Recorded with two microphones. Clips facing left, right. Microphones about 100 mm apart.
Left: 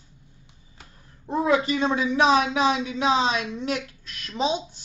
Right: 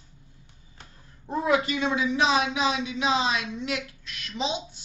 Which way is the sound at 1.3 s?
30° left (ahead or behind).